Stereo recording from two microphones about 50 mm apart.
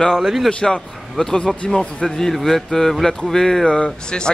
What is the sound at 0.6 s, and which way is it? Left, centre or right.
Speech, centre.